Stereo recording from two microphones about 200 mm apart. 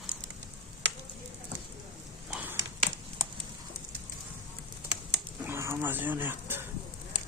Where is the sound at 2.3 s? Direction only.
5° right (ahead or behind).